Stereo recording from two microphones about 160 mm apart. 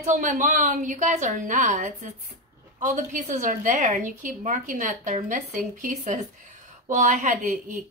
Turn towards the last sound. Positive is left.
turn(degrees=-55)  # may be behind; listen again after turning